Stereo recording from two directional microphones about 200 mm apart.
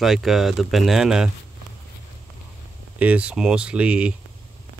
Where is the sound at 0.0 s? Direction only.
Centre (ahead or behind).